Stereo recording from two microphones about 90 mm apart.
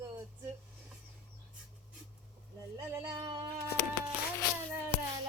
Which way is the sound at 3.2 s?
55° right (ahead or behind).